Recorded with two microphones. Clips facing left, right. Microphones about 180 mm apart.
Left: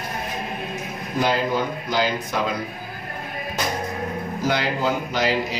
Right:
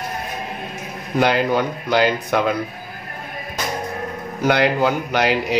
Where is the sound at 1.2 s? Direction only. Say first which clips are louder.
Right 4 dB; 65° right (ahead or behind).